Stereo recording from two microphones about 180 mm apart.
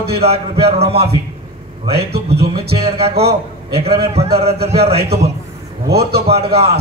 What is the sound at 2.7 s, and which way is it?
A man's voice, 35° right (ahead or behind).